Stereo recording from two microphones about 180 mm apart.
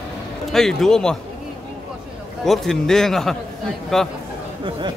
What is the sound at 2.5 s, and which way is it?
Speech, 5° left (ahead or behind).